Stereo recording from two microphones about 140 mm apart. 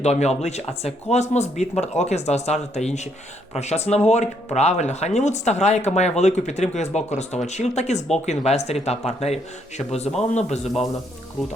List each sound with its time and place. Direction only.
0.0 s speech: 50° left (ahead or behind)